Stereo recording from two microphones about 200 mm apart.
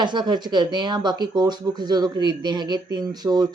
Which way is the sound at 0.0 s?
20° right (ahead or behind).